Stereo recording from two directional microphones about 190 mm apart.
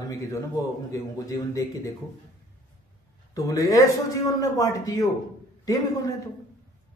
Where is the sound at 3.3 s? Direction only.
20° left (ahead or behind).